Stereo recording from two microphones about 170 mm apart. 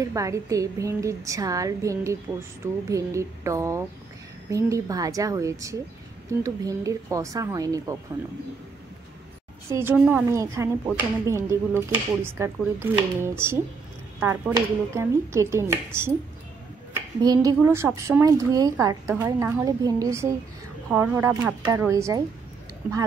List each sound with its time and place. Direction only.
0.1 s a woman's voice: 20° right (ahead or behind)
9.7 s a woman's voice: 15° right (ahead or behind)
17.2 s a woman's voice: 20° right (ahead or behind)